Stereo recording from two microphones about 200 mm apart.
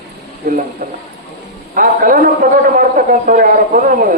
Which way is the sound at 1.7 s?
45° right (ahead or behind).